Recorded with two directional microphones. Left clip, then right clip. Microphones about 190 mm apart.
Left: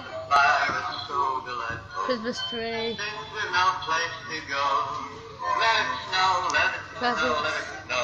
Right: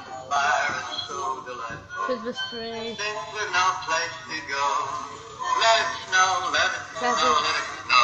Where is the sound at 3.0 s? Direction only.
30° left (ahead or behind).